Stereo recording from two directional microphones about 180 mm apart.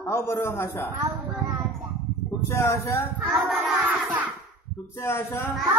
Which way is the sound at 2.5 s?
15° left (ahead or behind).